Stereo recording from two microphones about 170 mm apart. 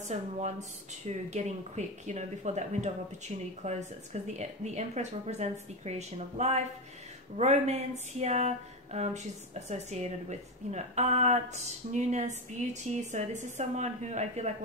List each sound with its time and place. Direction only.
0.1 s speech: 40° right (ahead or behind)